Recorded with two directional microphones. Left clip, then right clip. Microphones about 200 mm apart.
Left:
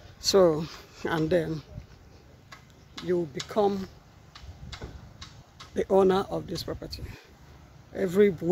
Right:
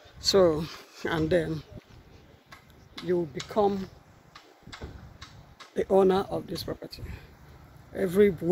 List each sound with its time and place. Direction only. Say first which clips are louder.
0.2 s speech: left 1 dB; 10° left (ahead or behind)
2.5 s tick-tock: left 1 dB; 25° left (ahead or behind)
3.4 s speech: even; 5° left (ahead or behind)
4.3 s tick-tock: left 1 dB; 55° left (ahead or behind)
5.8 s speech: even; centre (ahead or behind)
7.9 s speech: even; centre (ahead or behind)